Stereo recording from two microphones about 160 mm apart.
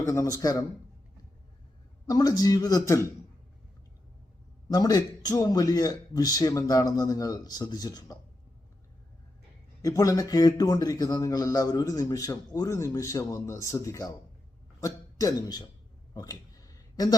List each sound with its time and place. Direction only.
0.1 s speech: 20° left (ahead or behind)
2.0 s speech: 25° left (ahead or behind)
4.7 s speech: 25° left (ahead or behind)
9.8 s speech: 20° left (ahead or behind)
16.1 s a sound: 25° left (ahead or behind)